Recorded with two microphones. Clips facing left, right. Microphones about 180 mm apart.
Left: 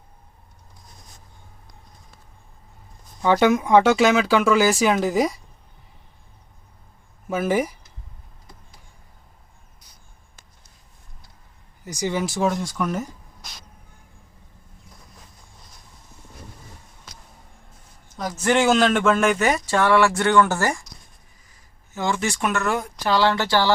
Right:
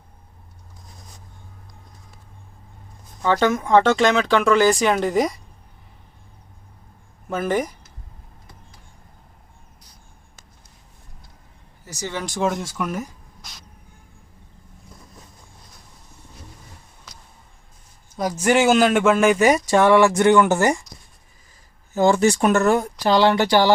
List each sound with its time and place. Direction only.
3.2 s speech: 10° left (ahead or behind)
7.3 s speech: 5° left (ahead or behind)
11.9 s speech: 10° left (ahead or behind); by 13.1 s 10° right (ahead or behind)
18.2 s speech: 10° right (ahead or behind)
21.9 s speech: 40° right (ahead or behind)
23.1 s speech: 15° right (ahead or behind)